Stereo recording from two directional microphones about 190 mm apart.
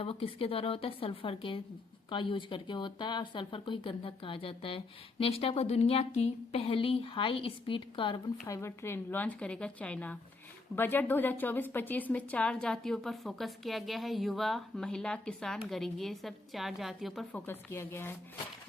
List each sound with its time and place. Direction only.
0.0 s a woman's voice: 30° left (ahead or behind); by 17.4 s centre (ahead or behind)
17.4 s a woman's voice: 10° left (ahead or behind)